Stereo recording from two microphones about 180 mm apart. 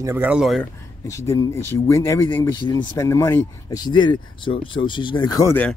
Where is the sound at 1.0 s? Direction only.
15° left (ahead or behind).